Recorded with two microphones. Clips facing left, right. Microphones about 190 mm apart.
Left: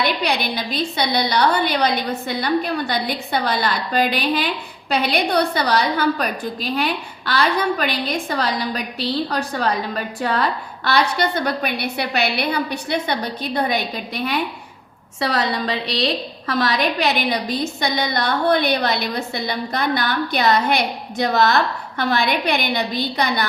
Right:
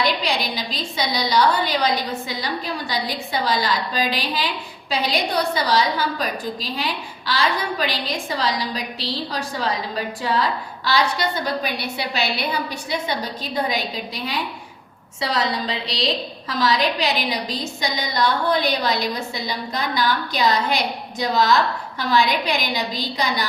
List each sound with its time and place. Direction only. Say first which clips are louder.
0.0 s a woman's voice: left 1 dB; 60° left (ahead or behind)